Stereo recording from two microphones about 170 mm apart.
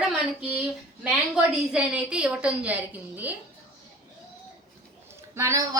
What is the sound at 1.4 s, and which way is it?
A woman's voice, 5° right (ahead or behind).